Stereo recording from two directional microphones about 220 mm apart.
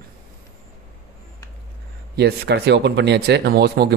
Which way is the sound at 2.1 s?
50° right (ahead or behind).